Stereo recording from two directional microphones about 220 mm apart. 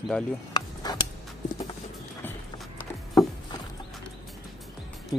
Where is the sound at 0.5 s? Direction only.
20° left (ahead or behind).